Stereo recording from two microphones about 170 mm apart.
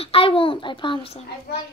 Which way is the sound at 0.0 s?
35° left (ahead or behind).